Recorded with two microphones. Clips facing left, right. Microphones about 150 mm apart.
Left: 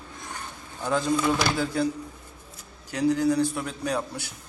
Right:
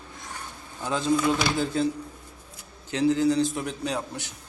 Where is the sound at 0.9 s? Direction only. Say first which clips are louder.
Left 1 dB; 20° right (ahead or behind).